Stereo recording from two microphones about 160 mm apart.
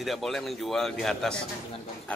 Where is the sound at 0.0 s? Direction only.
Centre (ahead or behind).